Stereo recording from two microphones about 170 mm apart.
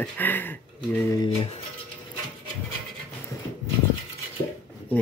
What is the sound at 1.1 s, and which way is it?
Speech, 25° left (ahead or behind).